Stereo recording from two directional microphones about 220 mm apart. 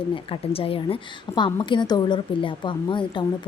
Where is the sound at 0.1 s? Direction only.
25° left (ahead or behind).